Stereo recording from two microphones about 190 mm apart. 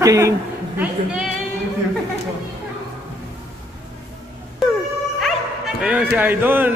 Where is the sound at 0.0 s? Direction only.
15° right (ahead or behind).